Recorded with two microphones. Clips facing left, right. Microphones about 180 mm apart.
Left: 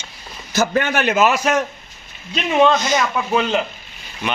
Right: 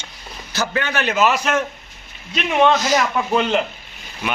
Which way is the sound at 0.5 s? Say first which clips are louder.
Left 4 dB; 50° left (ahead or behind).